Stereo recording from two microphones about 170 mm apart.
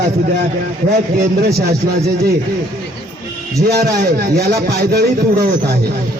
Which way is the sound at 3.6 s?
70° right (ahead or behind).